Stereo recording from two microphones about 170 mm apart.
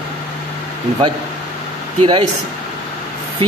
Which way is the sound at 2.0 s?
35° right (ahead or behind).